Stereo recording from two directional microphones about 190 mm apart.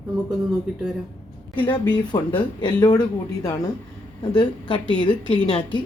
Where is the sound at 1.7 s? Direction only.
25° left (ahead or behind).